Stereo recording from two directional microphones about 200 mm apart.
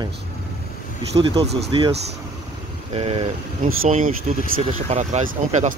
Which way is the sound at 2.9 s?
30° right (ahead or behind).